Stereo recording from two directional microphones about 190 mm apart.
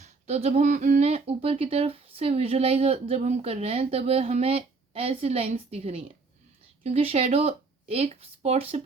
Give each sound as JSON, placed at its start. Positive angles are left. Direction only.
{"t": 0.0, "sound": "speech", "side_deg": -35}